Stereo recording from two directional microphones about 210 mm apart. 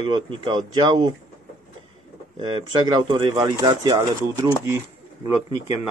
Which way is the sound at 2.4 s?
20° right (ahead or behind).